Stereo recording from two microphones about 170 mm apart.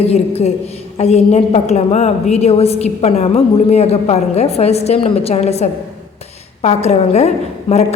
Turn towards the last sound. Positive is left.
turn(degrees=40)  # may be behind; listen again after turning